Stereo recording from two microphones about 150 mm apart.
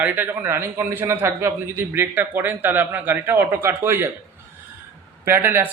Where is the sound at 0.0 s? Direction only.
15° right (ahead or behind).